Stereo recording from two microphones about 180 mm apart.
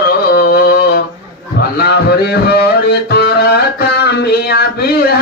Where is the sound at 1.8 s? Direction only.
65° left (ahead or behind).